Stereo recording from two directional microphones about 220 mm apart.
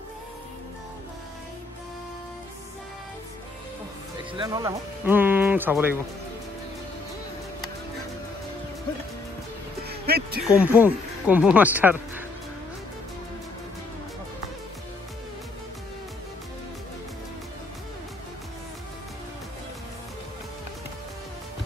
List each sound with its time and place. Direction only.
4.3 s speech: 20° right (ahead or behind)
9.8 s music: 45° right (ahead or behind)
10.5 s speech: 5° right (ahead or behind)